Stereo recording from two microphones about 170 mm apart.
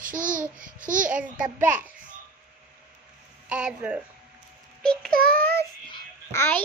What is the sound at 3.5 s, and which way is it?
Speech, 5° right (ahead or behind).